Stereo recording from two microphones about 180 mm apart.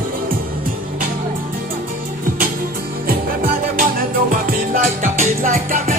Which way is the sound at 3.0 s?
50° right (ahead or behind).